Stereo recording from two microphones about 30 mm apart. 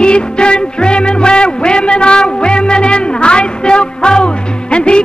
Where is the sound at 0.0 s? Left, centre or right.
Left.